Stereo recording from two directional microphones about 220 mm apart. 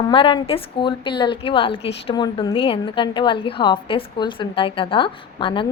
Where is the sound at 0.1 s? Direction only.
25° left (ahead or behind).